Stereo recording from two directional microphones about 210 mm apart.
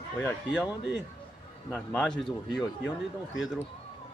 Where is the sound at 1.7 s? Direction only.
5° left (ahead or behind).